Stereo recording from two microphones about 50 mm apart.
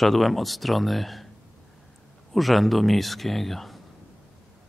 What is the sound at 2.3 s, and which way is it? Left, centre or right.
Speech, centre.